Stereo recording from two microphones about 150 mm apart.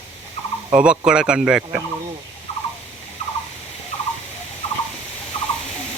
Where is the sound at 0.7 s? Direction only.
5° right (ahead or behind).